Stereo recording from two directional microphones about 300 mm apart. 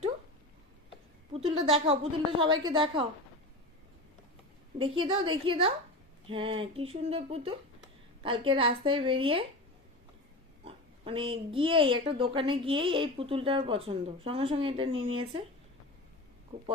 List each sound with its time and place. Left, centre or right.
1.3 s a woman's voice: centre
4.8 s speech: centre
6.2 s a sound: centre
8.2 s speech: centre
10.6 s speech: centre